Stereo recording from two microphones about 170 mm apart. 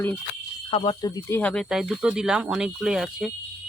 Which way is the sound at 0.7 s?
30° left (ahead or behind).